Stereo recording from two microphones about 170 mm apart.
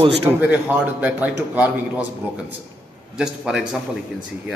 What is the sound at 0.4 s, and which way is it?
A man's voice, 10° right (ahead or behind).